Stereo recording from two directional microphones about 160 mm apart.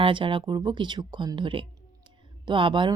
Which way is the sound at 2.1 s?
30° right (ahead or behind).